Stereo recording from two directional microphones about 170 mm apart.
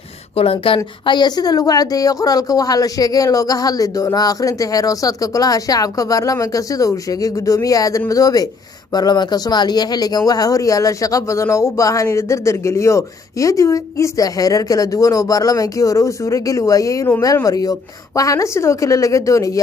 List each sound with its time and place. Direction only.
0.4 s a woman's voice: 35° left (ahead or behind)